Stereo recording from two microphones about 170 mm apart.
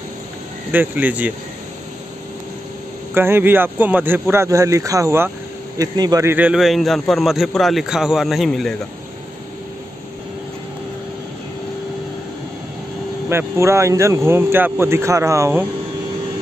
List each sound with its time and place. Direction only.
0.7 s speech: 10° right (ahead or behind)
3.2 s a man's voice: 15° right (ahead or behind)
13.3 s speech: 15° right (ahead or behind)